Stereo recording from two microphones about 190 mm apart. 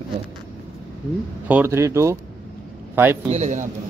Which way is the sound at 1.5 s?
10° right (ahead or behind).